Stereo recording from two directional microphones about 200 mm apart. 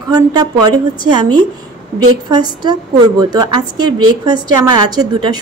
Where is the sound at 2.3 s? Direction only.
20° right (ahead or behind).